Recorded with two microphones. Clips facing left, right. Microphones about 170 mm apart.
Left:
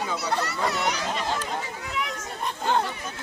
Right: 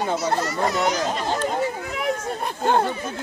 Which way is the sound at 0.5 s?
40° right (ahead or behind).